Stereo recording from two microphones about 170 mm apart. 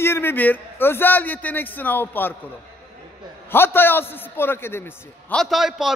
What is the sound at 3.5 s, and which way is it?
A man's voice, 15° left (ahead or behind).